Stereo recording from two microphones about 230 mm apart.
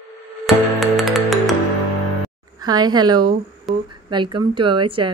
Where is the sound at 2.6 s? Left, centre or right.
Centre.